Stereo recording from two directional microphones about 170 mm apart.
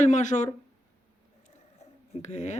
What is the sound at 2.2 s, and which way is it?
Speech, 45° left (ahead or behind).